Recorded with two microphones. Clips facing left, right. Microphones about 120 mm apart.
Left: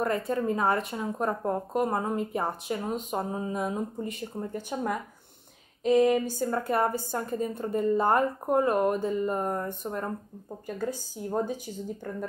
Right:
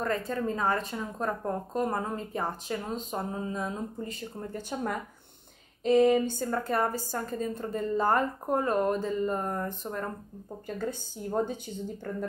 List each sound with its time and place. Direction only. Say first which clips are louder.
0.0 s a woman's voice: left 3 dB; 20° left (ahead or behind)
5.9 s a sound: even; 5° left (ahead or behind)
6.7 s a woman's voice: left 2 dB; 20° left (ahead or behind)